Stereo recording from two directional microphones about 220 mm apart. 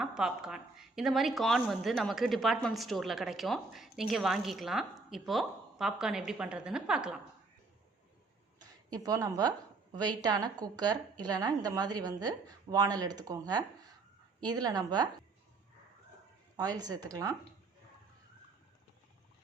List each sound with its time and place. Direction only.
0.0 s a woman's voice: 5° right (ahead or behind)
8.5 s a woman's voice: 15° right (ahead or behind)
16.6 s a woman's voice: 15° right (ahead or behind)